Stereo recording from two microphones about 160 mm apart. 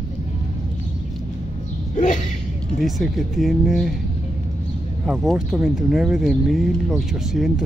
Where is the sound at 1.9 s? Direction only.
50° left (ahead or behind).